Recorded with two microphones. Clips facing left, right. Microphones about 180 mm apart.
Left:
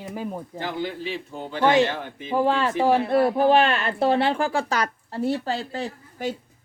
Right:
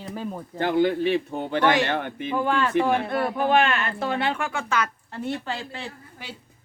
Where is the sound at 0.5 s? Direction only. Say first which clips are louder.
Right 11 dB; 60° right (ahead or behind).